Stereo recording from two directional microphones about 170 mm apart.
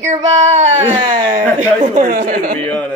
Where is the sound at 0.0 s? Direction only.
45° right (ahead or behind).